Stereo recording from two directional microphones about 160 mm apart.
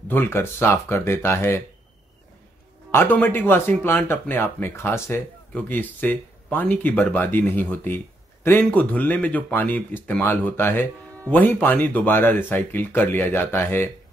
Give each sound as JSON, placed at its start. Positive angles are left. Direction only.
{"t": 0.1, "sound": "speech", "side_deg": 15}
{"t": 2.9, "sound": "speech", "side_deg": 10}